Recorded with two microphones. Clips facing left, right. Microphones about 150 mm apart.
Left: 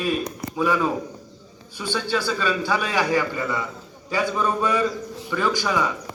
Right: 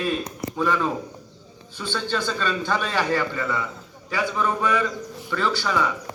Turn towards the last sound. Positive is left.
turn(degrees=15)  # may be behind; listen again after turning